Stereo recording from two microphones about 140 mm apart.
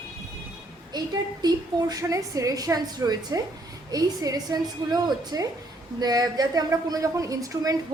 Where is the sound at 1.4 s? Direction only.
30° right (ahead or behind).